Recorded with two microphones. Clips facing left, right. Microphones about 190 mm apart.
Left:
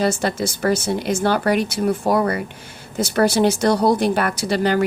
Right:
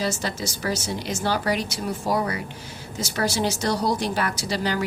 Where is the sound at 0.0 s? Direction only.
55° left (ahead or behind).